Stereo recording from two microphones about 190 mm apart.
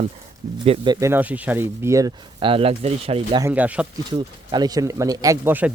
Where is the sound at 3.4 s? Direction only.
10° right (ahead or behind).